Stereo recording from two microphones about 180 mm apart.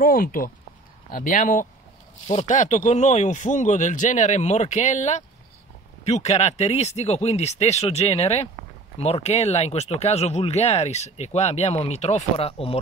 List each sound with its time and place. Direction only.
0.0 s speech: 50° left (ahead or behind); by 12.7 s 30° left (ahead or behind)